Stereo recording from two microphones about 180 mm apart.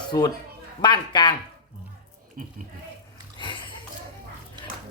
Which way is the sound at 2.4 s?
50° right (ahead or behind).